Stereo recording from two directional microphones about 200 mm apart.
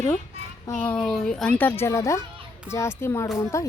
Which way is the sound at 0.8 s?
5° left (ahead or behind).